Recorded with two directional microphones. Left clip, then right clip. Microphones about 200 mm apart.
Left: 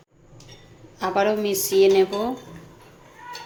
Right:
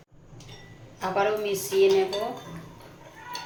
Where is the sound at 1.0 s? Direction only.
60° left (ahead or behind).